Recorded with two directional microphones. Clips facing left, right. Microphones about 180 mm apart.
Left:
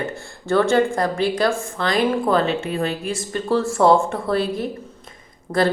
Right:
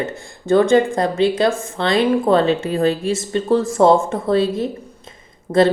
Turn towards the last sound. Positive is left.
turn(degrees=-25)  # may be behind; listen again after turning